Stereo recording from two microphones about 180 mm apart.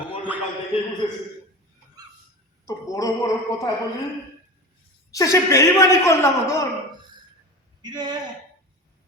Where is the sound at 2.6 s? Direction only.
20° left (ahead or behind).